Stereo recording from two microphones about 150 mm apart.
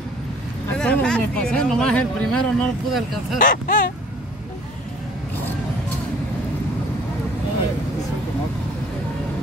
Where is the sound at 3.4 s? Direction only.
65° left (ahead or behind).